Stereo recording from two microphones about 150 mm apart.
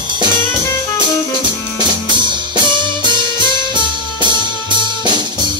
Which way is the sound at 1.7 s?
30° right (ahead or behind).